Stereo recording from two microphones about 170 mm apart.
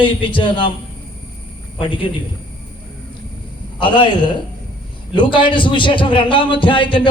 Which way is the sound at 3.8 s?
30° left (ahead or behind).